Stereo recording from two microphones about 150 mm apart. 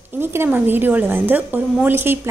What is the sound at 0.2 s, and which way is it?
A woman's voice, 15° right (ahead or behind).